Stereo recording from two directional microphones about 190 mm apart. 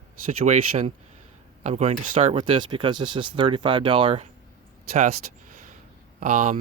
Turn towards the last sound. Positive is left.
turn(degrees=-40)  # may be behind; listen again after turning